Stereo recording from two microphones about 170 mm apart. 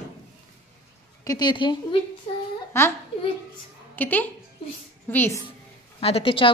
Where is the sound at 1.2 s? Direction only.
25° left (ahead or behind).